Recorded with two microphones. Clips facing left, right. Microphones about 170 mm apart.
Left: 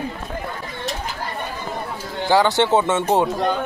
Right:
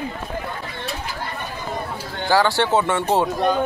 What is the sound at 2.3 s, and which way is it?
Speech, 20° left (ahead or behind).